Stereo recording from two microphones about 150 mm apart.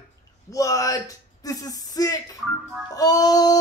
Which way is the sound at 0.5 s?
20° left (ahead or behind).